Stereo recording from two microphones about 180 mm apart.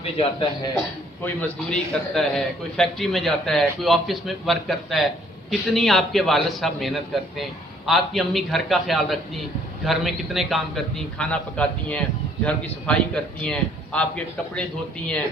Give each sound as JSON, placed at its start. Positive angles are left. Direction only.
{"t": 0.0, "sound": "a man's voice", "side_deg": 30}
{"t": 1.2, "sound": "a man's voice", "side_deg": 5}